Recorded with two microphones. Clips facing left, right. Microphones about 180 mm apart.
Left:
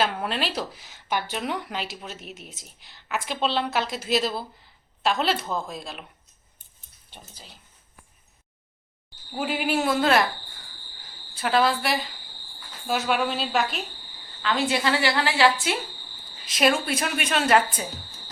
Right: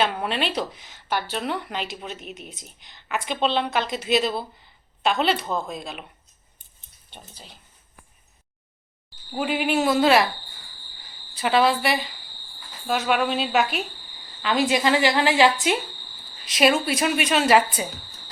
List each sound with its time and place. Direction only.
0.0 s speech: centre (ahead or behind)
7.1 s speech: 5° left (ahead or behind)
9.3 s speech: centre (ahead or behind)
11.3 s a woman's voice: centre (ahead or behind); by 15.7 s 20° right (ahead or behind)
16.5 s speech: centre (ahead or behind)